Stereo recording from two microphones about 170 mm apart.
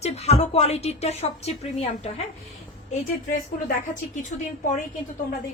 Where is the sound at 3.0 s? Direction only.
50° left (ahead or behind).